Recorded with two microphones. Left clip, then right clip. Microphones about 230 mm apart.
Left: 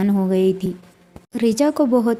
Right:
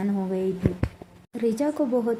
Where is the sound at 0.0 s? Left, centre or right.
Left.